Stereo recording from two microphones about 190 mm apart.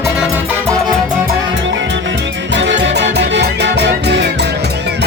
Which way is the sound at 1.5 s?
75° right (ahead or behind).